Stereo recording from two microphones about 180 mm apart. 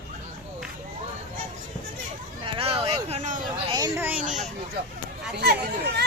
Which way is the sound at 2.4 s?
30° right (ahead or behind).